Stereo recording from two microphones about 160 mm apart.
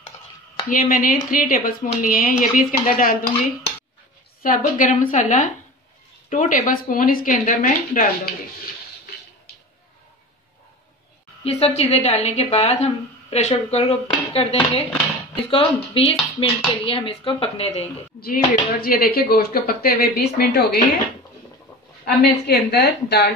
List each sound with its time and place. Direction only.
0.7 s speech: 60° left (ahead or behind)
4.4 s speech: 55° left (ahead or behind)
11.4 s a woman's voice: 40° left (ahead or behind)
18.2 s speech: 65° left (ahead or behind)
22.0 s a woman's voice: 85° left